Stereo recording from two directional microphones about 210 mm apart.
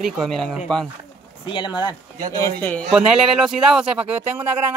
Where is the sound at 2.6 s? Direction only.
5° left (ahead or behind).